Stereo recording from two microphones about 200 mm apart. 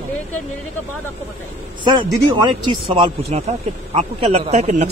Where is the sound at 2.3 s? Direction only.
25° right (ahead or behind).